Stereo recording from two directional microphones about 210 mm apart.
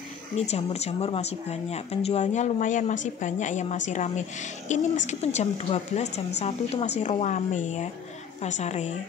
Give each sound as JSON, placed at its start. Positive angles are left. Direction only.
{"t": 0.4, "sound": "speech", "side_deg": 30}